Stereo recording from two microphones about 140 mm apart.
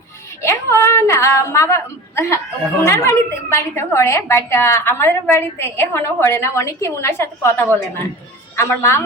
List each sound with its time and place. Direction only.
0.4 s a woman's voice: 20° left (ahead or behind)